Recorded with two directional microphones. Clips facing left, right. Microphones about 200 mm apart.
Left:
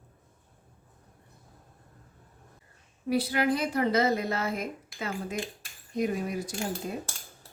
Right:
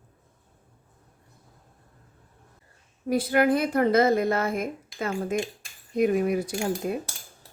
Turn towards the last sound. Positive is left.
turn(degrees=-60)  # may be behind; listen again after turning